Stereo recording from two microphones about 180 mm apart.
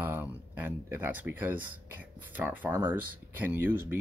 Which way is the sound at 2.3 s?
10° right (ahead or behind).